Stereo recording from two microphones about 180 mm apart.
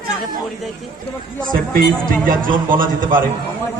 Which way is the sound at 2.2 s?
50° right (ahead or behind).